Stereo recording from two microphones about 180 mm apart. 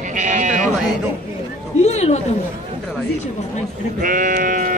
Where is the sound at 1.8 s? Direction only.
35° left (ahead or behind).